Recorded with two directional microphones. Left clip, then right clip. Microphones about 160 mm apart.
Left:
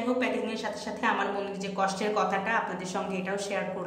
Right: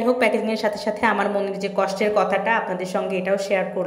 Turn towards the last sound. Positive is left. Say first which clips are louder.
# right 10 dB
turn(degrees=-25)  # may be behind; listen again after turning